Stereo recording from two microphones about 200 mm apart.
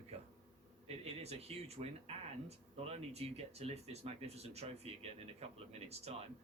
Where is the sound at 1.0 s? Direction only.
30° right (ahead or behind).